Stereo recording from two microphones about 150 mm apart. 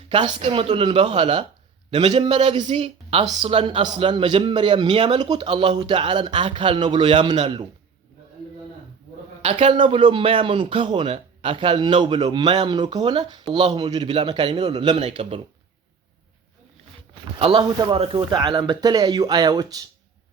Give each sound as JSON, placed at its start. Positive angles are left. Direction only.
{"t": 0.1, "sound": "speech", "side_deg": -35}
{"t": 9.4, "sound": "a man's voice", "side_deg": -50}
{"t": 9.7, "sound": "speech", "side_deg": -35}
{"t": 17.4, "sound": "speech", "side_deg": -35}